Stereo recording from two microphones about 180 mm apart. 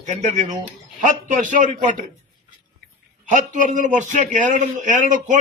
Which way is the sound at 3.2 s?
45° right (ahead or behind).